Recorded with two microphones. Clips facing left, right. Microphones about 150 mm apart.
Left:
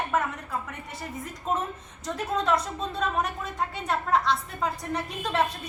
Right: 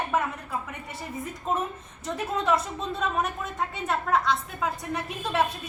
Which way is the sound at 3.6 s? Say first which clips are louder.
Even; centre (ahead or behind).